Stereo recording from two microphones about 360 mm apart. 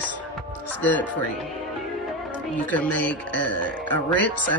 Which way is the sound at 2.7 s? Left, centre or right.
Centre.